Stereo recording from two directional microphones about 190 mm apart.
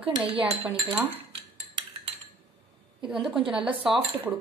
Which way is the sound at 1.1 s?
30° right (ahead or behind).